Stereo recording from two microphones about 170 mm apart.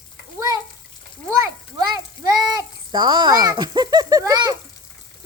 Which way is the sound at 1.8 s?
25° right (ahead or behind).